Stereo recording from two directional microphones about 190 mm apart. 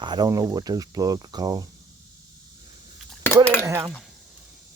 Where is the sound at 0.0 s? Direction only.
20° right (ahead or behind).